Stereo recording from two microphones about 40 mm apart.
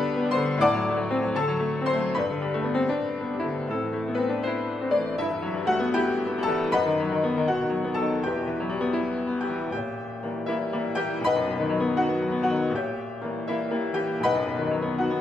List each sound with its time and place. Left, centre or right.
0.2 s music: centre
5.8 s music: centre
12.1 s music: centre
14.2 s music: centre